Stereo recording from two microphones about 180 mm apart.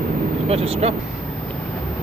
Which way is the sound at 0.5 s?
35° right (ahead or behind).